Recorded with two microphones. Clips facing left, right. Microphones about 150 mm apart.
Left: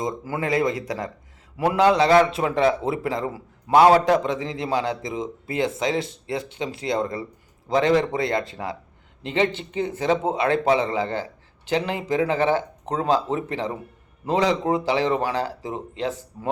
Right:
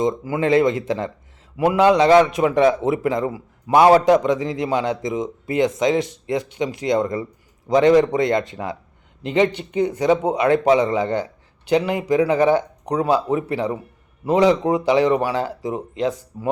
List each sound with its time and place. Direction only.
0.0 s a man's voice: 20° right (ahead or behind)